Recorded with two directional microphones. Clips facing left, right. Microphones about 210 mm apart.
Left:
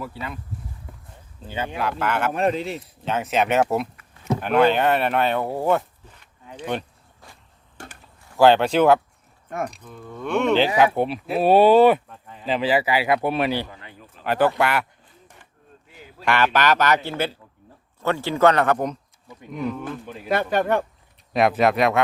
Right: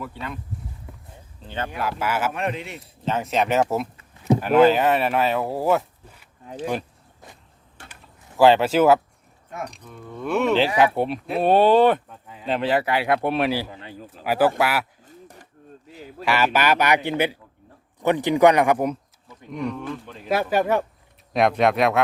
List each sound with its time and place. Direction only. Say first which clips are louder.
0.0 s speech: even; 5° left (ahead or behind)
1.4 s speech: left 1 dB; 10° left (ahead or behind)
1.8 s speech: left 1 dB; 5° right (ahead or behind)
2.3 s speech: left 5 dB; 35° left (ahead or behind)
3.0 s speech: even; centre (ahead or behind)
3.9 s a sound: right 5 dB; 30° right (ahead or behind)
4.4 s speech: right 2 dB; 5° right (ahead or behind)
8.4 s speech: even; centre (ahead or behind)
12.0 s speech: even; 5° right (ahead or behind)
13.7 s a sound: right 5 dB; 30° right (ahead or behind)
14.3 s speech: even; 5° right (ahead or behind)
15.0 s a sound: right 7 dB; 40° right (ahead or behind)
16.2 s speech: left 1 dB; 5° right (ahead or behind)
19.5 s speech: even; centre (ahead or behind)